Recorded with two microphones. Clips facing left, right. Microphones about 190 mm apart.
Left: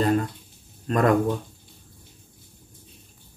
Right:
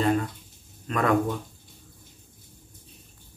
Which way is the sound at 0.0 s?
40° left (ahead or behind).